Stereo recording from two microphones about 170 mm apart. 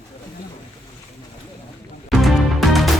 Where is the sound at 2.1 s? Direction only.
Centre (ahead or behind).